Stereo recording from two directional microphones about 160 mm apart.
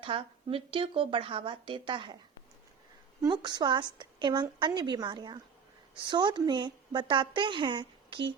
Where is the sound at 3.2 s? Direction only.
25° right (ahead or behind).